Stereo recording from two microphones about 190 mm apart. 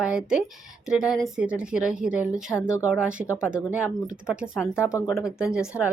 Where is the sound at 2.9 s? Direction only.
5° right (ahead or behind).